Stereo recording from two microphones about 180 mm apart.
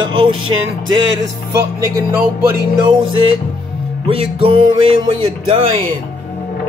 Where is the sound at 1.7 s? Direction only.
15° right (ahead or behind).